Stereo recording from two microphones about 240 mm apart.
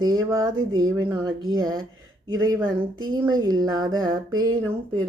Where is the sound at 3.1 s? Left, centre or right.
Centre.